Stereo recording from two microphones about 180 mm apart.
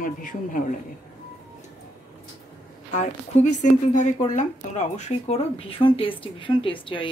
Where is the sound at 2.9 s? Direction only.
45° left (ahead or behind).